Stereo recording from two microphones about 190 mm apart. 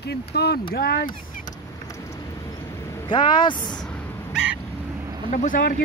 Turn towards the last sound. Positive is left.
turn(degrees=45)  # may be behind; listen again after turning